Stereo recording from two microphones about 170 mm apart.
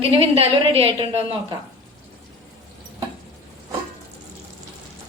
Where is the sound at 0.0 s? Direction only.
35° right (ahead or behind).